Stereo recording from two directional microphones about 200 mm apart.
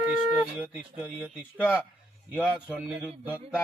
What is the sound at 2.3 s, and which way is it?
Speech, 5° right (ahead or behind).